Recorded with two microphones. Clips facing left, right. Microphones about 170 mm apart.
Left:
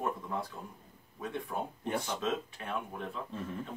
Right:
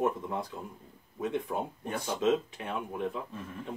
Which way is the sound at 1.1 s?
20° right (ahead or behind).